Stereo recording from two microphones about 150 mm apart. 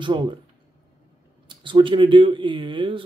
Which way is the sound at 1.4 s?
35° right (ahead or behind).